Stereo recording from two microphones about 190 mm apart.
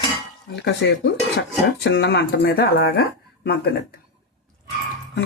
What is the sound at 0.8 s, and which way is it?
Speech, 70° left (ahead or behind).